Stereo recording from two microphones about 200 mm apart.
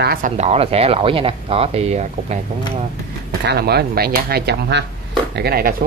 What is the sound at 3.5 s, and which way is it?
Speech, 55° right (ahead or behind).